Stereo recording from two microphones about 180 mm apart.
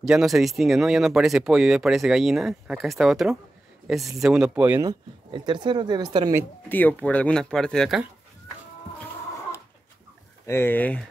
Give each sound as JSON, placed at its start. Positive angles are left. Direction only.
{"t": 0.0, "sound": "speech", "side_deg": 0}
{"t": 4.8, "sound": "speech", "side_deg": -25}
{"t": 6.7, "sound": "speech", "side_deg": 10}
{"t": 10.4, "sound": "speech", "side_deg": 15}